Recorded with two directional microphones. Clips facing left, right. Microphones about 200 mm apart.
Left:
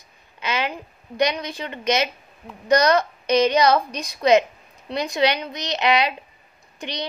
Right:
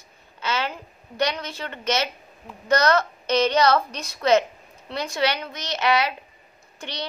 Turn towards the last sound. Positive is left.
turn(degrees=15)  # may be behind; listen again after turning